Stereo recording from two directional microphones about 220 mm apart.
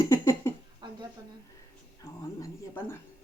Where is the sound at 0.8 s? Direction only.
20° right (ahead or behind).